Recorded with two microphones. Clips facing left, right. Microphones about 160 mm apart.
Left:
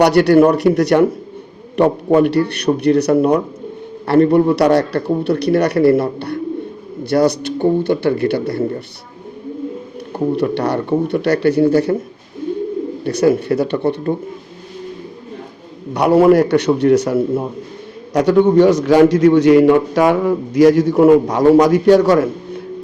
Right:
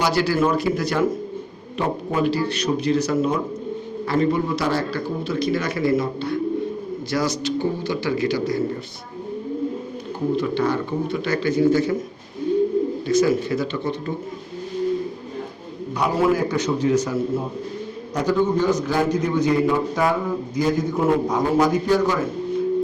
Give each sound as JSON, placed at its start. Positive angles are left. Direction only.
{"t": 0.0, "sound": "a man's voice", "side_deg": 70}
{"t": 10.3, "sound": "a man's voice", "side_deg": 65}
{"t": 13.1, "sound": "a man's voice", "side_deg": 65}
{"t": 15.9, "sound": "a man's voice", "side_deg": 70}